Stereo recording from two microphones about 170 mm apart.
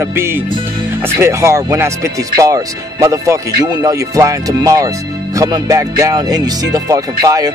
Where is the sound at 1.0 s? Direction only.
15° right (ahead or behind).